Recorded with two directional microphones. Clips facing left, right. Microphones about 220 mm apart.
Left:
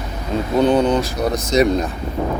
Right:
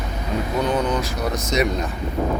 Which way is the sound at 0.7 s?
30° left (ahead or behind).